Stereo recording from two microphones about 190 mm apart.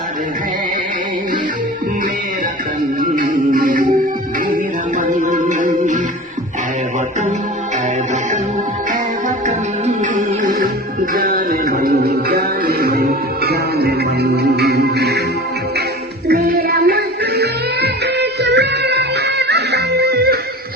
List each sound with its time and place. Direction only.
3.0 s music: 45° right (ahead or behind)
4.9 s music: 40° right (ahead or behind)
9.5 s music: 40° right (ahead or behind); by 15.2 s 60° right (ahead or behind)
16.3 s music: 55° right (ahead or behind)